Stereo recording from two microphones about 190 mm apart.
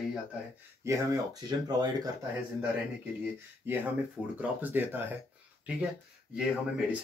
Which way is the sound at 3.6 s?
10° right (ahead or behind).